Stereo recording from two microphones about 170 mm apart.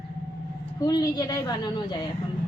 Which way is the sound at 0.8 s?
20° left (ahead or behind).